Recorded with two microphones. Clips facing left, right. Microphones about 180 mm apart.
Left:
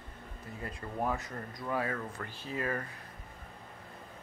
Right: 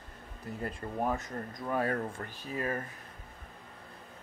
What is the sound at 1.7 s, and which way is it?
Speech, 40° right (ahead or behind).